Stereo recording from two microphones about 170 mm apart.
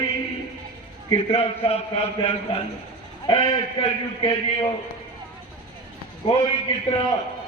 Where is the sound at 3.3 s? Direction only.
35° left (ahead or behind).